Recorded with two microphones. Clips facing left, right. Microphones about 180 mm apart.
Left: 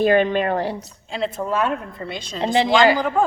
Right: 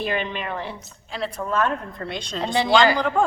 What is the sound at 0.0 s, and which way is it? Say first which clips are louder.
Speech: left 10 dB; 45° left (ahead or behind).